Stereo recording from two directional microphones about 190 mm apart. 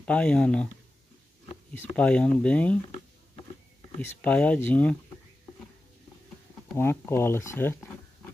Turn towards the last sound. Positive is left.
turn(degrees=10)  # may be behind; listen again after turning